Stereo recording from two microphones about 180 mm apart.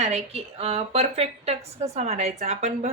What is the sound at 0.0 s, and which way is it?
A woman's voice, 35° right (ahead or behind).